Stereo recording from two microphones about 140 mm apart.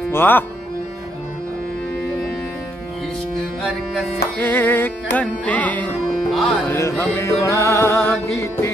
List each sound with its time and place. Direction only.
0.1 s speech: 15° left (ahead or behind)
3.6 s music: 5° left (ahead or behind)
4.4 s music: 15° left (ahead or behind)
6.7 s music: 20° left (ahead or behind)